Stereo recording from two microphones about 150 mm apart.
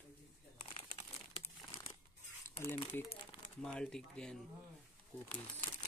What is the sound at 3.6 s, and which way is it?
Speech, 5° left (ahead or behind).